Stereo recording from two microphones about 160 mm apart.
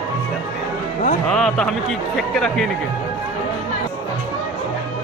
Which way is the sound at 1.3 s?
5° left (ahead or behind).